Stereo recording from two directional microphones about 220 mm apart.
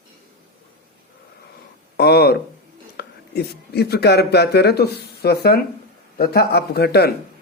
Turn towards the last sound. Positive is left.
turn(degrees=45)  # may be behind; listen again after turning